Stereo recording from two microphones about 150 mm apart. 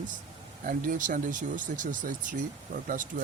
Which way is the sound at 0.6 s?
65° right (ahead or behind).